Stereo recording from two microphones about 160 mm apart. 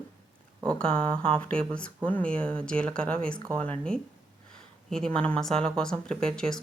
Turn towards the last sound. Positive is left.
turn(degrees=5)  # may be behind; listen again after turning